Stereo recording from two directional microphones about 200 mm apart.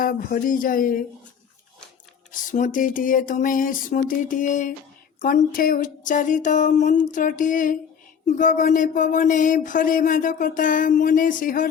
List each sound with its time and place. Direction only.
0.0 s speech: 45° left (ahead or behind)
2.5 s speech: 40° left (ahead or behind)